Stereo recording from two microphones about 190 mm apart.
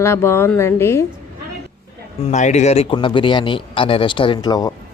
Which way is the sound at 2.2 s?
35° left (ahead or behind).